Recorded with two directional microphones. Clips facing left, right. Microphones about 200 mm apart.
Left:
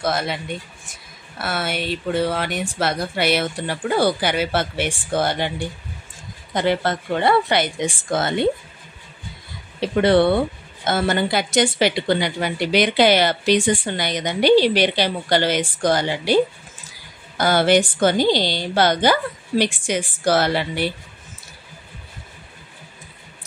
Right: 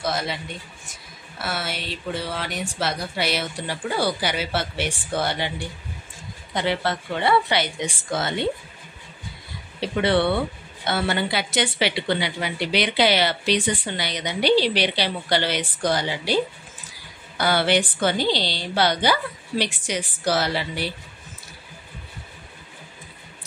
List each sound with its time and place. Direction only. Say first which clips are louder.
0.0 s speech: left 4 dB; 55° left (ahead or behind)
1.4 s speech: left 5 dB; 55° left (ahead or behind)
6.5 s speech: left 4 dB; 45° left (ahead or behind)
9.8 s speech: left 5 dB; 45° left (ahead or behind)
17.4 s speech: left 4 dB; 45° left (ahead or behind)